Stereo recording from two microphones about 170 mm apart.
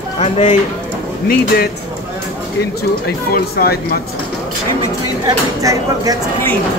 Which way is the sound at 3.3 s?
65° left (ahead or behind).